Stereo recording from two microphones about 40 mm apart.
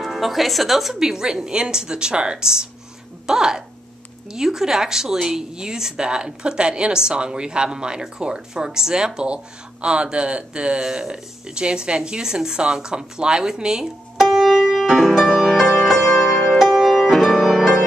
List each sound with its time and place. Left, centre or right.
0.0 s speech: centre
0.9 s speech: centre
15.8 s music: centre